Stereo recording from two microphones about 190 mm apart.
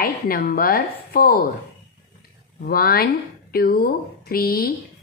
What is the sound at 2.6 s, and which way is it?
A woman's voice, 55° left (ahead or behind).